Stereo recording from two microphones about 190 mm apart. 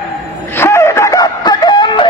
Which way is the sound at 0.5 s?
15° left (ahead or behind).